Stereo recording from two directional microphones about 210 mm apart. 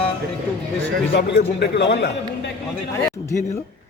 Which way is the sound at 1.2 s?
55° left (ahead or behind).